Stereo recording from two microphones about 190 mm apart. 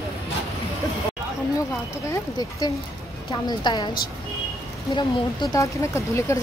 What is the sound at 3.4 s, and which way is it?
A woman's voice, 25° left (ahead or behind).